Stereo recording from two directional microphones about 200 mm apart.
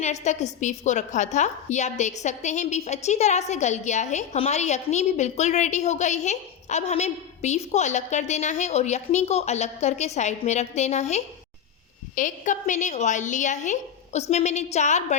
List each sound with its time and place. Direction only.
0.0 s a woman's voice: 35° left (ahead or behind)